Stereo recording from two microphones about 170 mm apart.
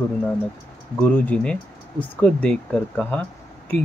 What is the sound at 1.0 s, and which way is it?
Speech, 10° left (ahead or behind).